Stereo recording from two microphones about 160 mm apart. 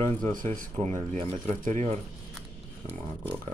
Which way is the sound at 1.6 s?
50° right (ahead or behind).